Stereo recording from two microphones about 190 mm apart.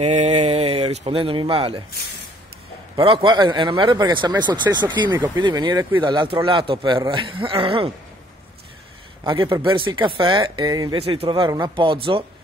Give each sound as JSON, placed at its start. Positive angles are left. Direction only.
{"t": 0.0, "sound": "speech", "side_deg": -35}
{"t": 3.0, "sound": "speech", "side_deg": -25}
{"t": 9.2, "sound": "speech", "side_deg": -25}